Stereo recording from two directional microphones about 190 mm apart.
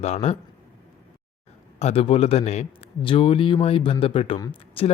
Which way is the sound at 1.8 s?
35° left (ahead or behind).